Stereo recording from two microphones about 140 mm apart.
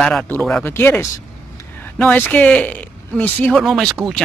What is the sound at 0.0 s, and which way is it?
Speech, centre (ahead or behind).